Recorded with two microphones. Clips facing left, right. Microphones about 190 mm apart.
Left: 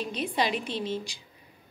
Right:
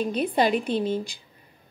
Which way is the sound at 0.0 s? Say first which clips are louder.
Right 6 dB; 55° right (ahead or behind).